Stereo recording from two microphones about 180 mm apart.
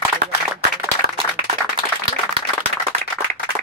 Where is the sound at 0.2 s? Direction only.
60° right (ahead or behind).